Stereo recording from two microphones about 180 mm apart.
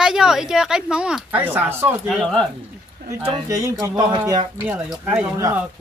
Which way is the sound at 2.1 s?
5° left (ahead or behind).